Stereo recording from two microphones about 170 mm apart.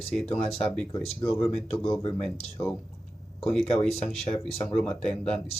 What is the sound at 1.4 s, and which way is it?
Speech, 35° left (ahead or behind).